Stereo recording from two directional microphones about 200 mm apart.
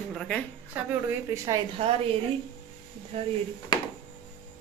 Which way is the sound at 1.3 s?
15° right (ahead or behind).